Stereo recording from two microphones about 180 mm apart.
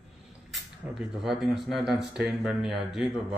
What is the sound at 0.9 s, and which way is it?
Speech, centre (ahead or behind).